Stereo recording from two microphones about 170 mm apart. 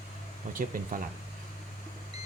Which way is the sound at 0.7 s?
55° right (ahead or behind).